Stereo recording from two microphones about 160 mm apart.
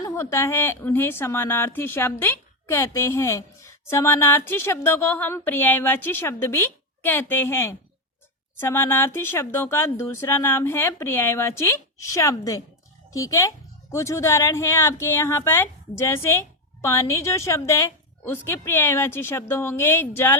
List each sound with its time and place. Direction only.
0.0 s speech: 20° left (ahead or behind)